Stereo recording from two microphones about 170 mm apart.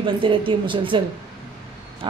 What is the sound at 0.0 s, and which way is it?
A man's voice, 30° right (ahead or behind).